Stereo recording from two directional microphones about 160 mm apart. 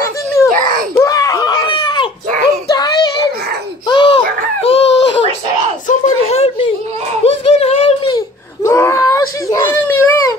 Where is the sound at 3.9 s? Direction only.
30° left (ahead or behind).